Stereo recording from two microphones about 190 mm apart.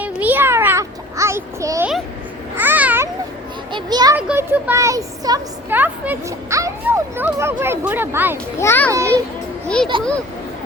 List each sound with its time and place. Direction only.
0.0 s a sound: 10° right (ahead or behind)
2.6 s cat: 10° right (ahead or behind)
3.7 s children playing: 25° right (ahead or behind)
4.1 s a child's voice: 10° right (ahead or behind)
8.5 s a child's voice: 10° left (ahead or behind)